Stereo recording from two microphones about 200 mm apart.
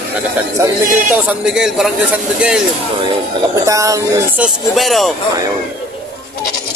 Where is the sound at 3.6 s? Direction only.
15° right (ahead or behind).